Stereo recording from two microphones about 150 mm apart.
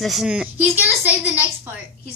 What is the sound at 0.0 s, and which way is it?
A woman's voice, centre (ahead or behind).